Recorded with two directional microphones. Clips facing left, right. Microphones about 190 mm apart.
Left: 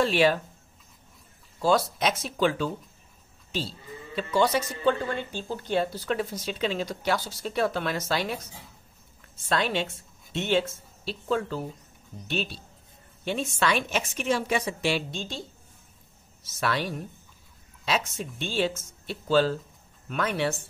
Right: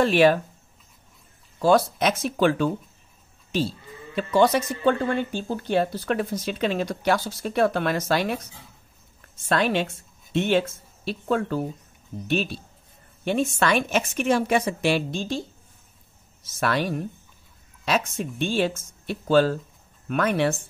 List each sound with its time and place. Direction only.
0.0 s a woman's voice: 55° right (ahead or behind)
1.6 s speech: 55° right (ahead or behind)
9.5 s a woman's voice: 55° right (ahead or behind)
16.4 s a woman's voice: 50° right (ahead or behind)